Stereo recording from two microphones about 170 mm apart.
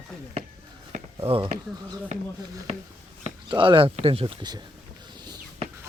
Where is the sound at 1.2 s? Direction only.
35° right (ahead or behind).